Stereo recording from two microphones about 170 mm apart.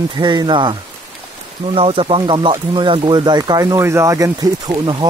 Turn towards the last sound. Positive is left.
turn(degrees=-25)  # may be behind; listen again after turning